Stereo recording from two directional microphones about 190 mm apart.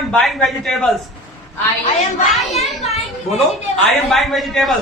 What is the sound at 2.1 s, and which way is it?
Speech, 35° left (ahead or behind).